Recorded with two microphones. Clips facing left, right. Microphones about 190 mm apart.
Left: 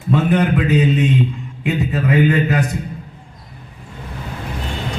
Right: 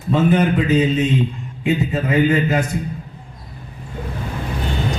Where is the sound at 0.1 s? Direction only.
65° left (ahead or behind).